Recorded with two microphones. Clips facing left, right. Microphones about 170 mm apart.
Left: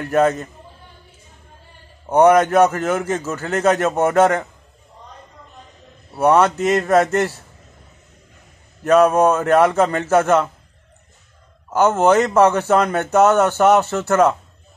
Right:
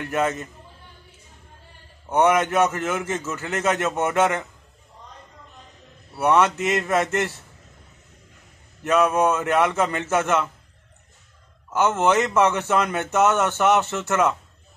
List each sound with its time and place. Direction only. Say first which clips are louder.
0.0 s a man's voice: left 7 dB; 35° left (ahead or behind)
2.0 s a man's voice: left 6 dB; 35° left (ahead or behind)
6.1 s a man's voice: left 4 dB; 35° left (ahead or behind)
8.8 s a man's voice: left 6 dB; 35° left (ahead or behind)
11.7 s a man's voice: left 5 dB; 35° left (ahead or behind)